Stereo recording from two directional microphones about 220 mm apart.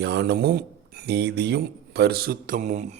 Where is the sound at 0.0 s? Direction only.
50° right (ahead or behind).